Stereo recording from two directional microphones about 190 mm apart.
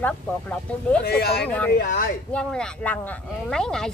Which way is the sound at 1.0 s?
55° left (ahead or behind).